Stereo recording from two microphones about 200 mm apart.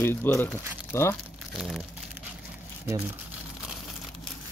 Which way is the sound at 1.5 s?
Centre (ahead or behind).